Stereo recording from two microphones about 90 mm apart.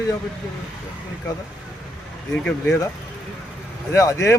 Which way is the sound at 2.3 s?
10° left (ahead or behind).